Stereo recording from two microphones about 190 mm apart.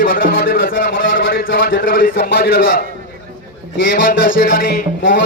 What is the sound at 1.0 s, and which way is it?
Speech, 85° left.